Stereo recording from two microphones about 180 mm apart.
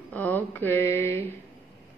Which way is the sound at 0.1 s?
10° left (ahead or behind).